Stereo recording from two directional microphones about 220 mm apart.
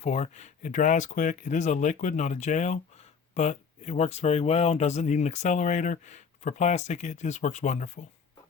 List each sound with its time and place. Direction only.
0.0 s speech: 30° left (ahead or behind)